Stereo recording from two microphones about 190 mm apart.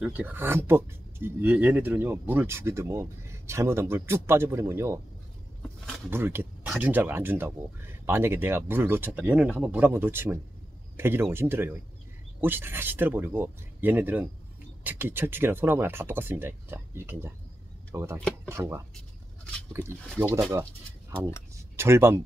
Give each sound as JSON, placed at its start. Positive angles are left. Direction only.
{"t": 0.0, "sound": "speech", "side_deg": -10}
{"t": 6.0, "sound": "speech", "side_deg": -10}
{"t": 21.7, "sound": "speech", "side_deg": -15}